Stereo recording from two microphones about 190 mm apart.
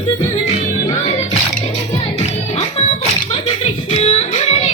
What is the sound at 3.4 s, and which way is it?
Music, 30° left (ahead or behind).